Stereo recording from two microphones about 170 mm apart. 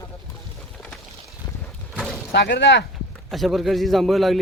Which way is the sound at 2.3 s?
85° left.